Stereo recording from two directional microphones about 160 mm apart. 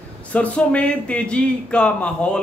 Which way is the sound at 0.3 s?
10° left (ahead or behind).